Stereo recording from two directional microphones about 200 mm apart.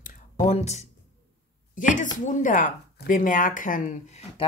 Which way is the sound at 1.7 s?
40° left (ahead or behind).